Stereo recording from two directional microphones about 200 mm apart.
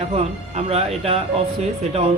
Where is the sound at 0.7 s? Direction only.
30° right (ahead or behind).